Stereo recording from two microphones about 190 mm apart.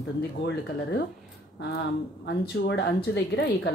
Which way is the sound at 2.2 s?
65° left (ahead or behind).